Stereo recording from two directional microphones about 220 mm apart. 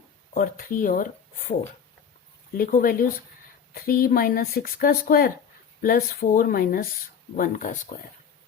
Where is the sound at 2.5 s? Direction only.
40° left (ahead or behind).